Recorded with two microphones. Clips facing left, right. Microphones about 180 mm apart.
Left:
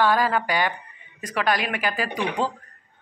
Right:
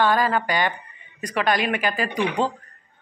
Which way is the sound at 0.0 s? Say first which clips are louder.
Right 1 dB; 5° left (ahead or behind).